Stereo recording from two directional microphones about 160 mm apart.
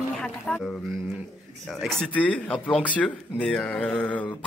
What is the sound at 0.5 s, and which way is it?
Speech, 5° left (ahead or behind).